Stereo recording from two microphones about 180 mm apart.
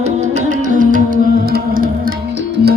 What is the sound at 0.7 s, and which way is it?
Music, 45° right (ahead or behind).